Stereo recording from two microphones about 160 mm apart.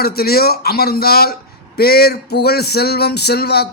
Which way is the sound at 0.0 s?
75° left (ahead or behind).